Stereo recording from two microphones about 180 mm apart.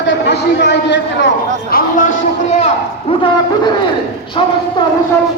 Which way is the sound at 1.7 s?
55° left (ahead or behind).